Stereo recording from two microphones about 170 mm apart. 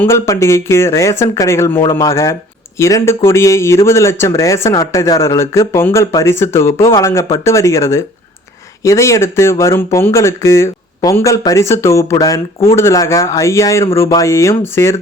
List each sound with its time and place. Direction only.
0.0 s speech: 15° left (ahead or behind)